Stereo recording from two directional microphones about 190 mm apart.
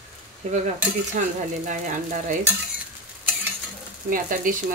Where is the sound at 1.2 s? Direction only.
40° right (ahead or behind).